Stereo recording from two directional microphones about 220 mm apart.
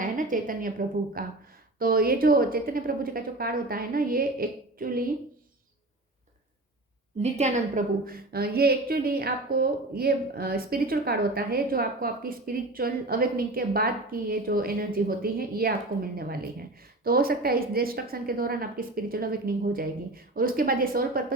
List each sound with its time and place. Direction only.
0.0 s a woman's voice: 35° right (ahead or behind)
7.2 s a woman's voice: 30° right (ahead or behind)